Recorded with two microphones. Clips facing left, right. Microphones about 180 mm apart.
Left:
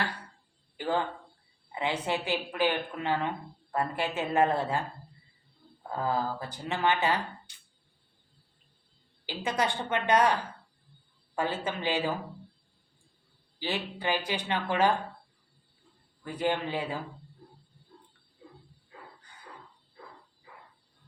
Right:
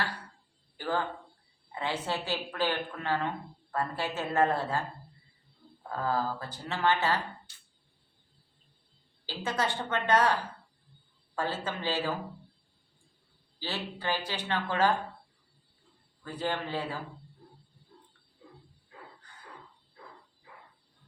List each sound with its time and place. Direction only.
0.8 s speech: 20° left (ahead or behind)
6.0 s speech: 15° left (ahead or behind)
9.2 s speech: 15° left (ahead or behind)
11.3 s speech: 15° left (ahead or behind)
13.6 s speech: 15° left (ahead or behind)
16.2 s speech: 15° left (ahead or behind)